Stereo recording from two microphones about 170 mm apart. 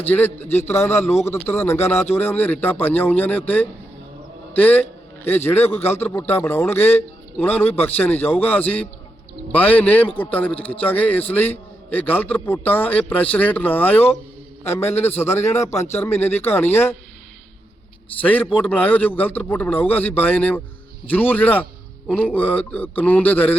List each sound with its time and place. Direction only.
0.0 s a man's voice: 10° left (ahead or behind)
18.2 s a man's voice: 10° left (ahead or behind)